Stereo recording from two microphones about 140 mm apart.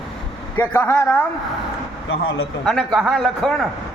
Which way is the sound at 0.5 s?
15° left (ahead or behind).